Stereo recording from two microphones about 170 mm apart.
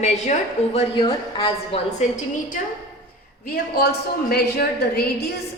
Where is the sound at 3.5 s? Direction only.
65° left (ahead or behind).